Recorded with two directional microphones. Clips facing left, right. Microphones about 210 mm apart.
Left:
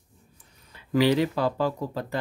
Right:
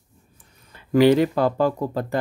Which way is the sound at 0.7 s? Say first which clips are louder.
Right 6 dB; 50° right (ahead or behind).